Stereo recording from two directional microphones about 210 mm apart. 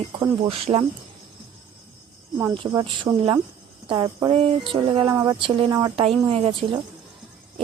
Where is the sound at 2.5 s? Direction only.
25° right (ahead or behind).